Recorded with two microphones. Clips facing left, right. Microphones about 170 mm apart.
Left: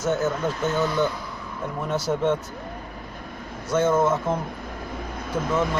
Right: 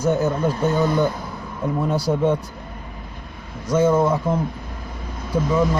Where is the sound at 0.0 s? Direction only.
15° right (ahead or behind).